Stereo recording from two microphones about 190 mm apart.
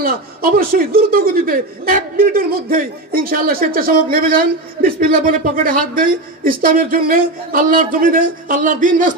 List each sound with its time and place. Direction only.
0.0 s speech: 50° right (ahead or behind)